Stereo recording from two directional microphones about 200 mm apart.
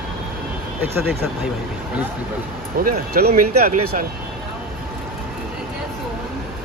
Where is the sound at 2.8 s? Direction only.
45° right (ahead or behind).